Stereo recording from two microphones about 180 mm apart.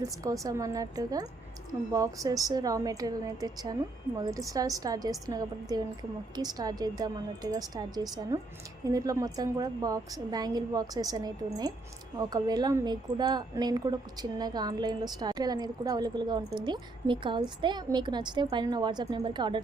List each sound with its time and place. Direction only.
0.0 s a woman's voice: 20° right (ahead or behind)